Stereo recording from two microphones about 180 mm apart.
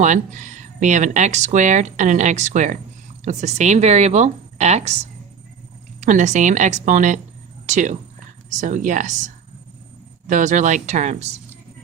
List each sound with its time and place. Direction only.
0.0 s speech: 45° right (ahead or behind)
6.0 s a woman's voice: 45° right (ahead or behind)